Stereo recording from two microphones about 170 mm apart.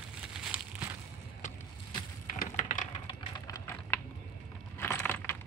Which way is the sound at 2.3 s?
50° left (ahead or behind).